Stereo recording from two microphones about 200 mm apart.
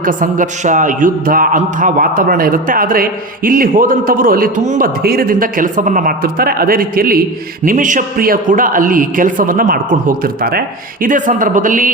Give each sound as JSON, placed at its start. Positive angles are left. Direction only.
{"t": 0.0, "sound": "a man's voice", "side_deg": -40}